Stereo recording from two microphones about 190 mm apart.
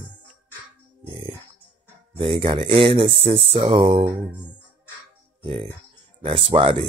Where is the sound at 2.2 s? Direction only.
25° right (ahead or behind).